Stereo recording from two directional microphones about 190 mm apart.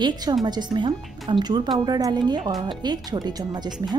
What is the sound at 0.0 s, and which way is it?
A woman's voice, 20° right (ahead or behind).